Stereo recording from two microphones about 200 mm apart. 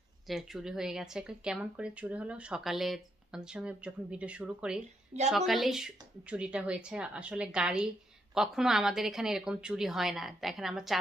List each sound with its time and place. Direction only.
0.3 s speech: centre (ahead or behind)